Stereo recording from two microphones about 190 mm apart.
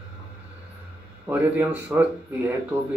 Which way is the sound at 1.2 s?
10° right (ahead or behind).